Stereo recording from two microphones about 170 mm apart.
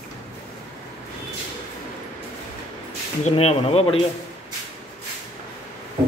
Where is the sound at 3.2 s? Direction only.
35° left (ahead or behind).